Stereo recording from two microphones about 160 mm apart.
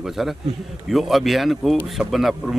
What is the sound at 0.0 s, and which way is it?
Speech, centre (ahead or behind).